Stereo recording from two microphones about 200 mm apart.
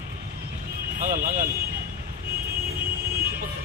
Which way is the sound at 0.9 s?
45° right (ahead or behind).